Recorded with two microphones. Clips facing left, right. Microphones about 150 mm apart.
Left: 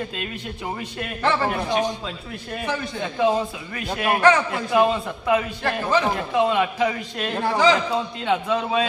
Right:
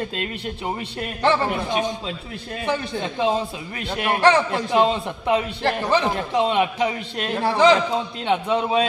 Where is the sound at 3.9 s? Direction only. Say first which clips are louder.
Even; 30° right (ahead or behind).